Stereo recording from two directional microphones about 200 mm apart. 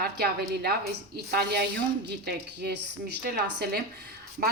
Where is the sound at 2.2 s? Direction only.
55° right (ahead or behind).